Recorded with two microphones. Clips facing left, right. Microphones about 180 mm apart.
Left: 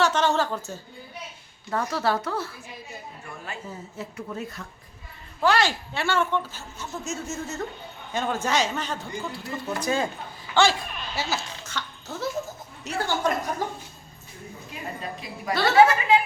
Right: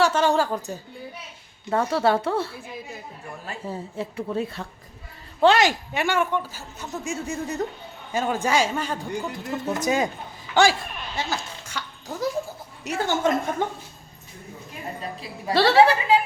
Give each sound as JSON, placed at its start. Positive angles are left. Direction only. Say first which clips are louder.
{"t": 0.0, "sound": "a woman's voice", "louder": "right 2 dB", "side_deg": -10}
{"t": 1.7, "sound": "a woman's voice", "louder": "right 4 dB", "side_deg": -30}
{"t": 11.1, "sound": "speech", "louder": "right 1 dB", "side_deg": 5}
{"t": 11.6, "sound": "dog", "louder": "even", "side_deg": -10}
{"t": 12.9, "sound": "speech", "louder": "right 3 dB", "side_deg": -20}
{"t": 15.2, "sound": "a woman's voice", "louder": "right 5 dB", "side_deg": -30}